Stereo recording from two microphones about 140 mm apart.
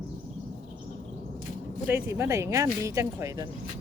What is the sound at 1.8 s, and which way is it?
Speech, 20° right (ahead or behind).